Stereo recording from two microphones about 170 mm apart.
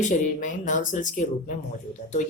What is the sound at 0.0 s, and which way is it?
Speech, 45° left (ahead or behind).